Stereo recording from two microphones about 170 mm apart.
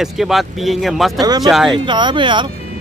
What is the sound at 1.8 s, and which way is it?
Speech, 25° right (ahead or behind).